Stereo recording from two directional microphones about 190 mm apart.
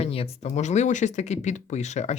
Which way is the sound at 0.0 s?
30° left (ahead or behind).